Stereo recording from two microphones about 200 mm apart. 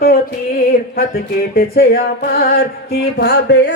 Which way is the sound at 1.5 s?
50° left (ahead or behind).